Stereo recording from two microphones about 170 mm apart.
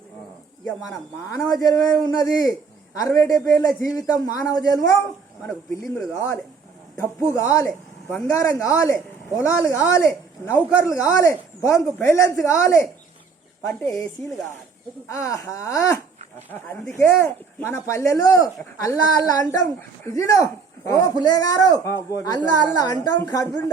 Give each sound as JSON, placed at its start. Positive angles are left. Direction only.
{"t": 0.8, "sound": "a man's voice", "side_deg": 20}
{"t": 6.0, "sound": "a man's voice", "side_deg": 15}
{"t": 15.0, "sound": "a man's voice", "side_deg": 20}